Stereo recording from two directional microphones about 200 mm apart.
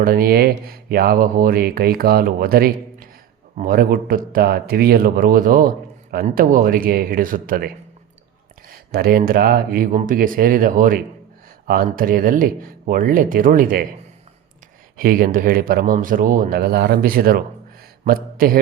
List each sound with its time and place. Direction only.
0.0 s speech: 50° right (ahead or behind)
8.7 s speech: 50° right (ahead or behind)
14.9 s speech: 45° right (ahead or behind)